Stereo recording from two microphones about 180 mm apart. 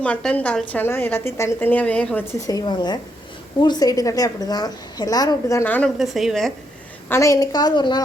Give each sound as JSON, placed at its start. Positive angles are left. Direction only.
{"t": 0.0, "sound": "a woman's voice", "side_deg": 5}
{"t": 2.5, "sound": "a woman's voice", "side_deg": 20}
{"t": 7.1, "sound": "a woman's voice", "side_deg": 15}